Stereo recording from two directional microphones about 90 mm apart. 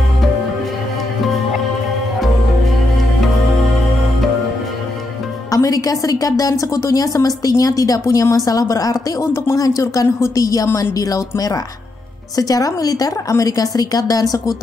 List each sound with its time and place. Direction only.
5.5 s a woman's voice: 40° left (ahead or behind)